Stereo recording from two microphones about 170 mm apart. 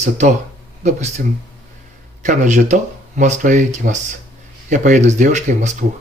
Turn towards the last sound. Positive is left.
turn(degrees=-45)  # may be behind; listen again after turning